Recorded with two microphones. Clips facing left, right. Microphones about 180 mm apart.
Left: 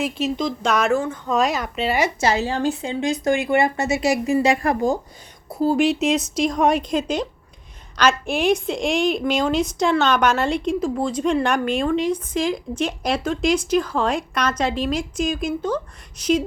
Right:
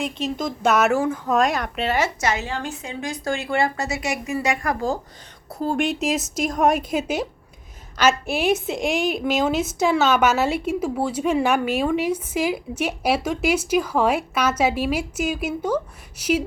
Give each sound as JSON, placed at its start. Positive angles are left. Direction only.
{"t": 0.0, "sound": "speech", "side_deg": 5}
{"t": 2.2, "sound": "a woman's voice", "side_deg": 35}
{"t": 5.5, "sound": "a woman's voice", "side_deg": 5}